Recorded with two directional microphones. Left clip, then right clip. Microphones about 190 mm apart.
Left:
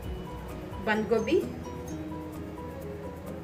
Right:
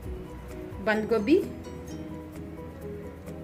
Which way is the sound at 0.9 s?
60° right (ahead or behind).